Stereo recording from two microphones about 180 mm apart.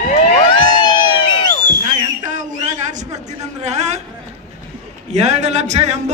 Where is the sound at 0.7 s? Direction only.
25° left (ahead or behind).